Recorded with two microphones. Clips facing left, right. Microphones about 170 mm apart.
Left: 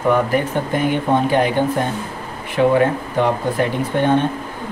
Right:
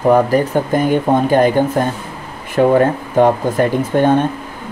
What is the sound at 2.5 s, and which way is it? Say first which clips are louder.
Speech: right 3 dB; 45° right (ahead or behind).